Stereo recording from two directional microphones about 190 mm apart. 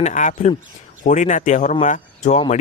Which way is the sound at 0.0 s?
40° left (ahead or behind).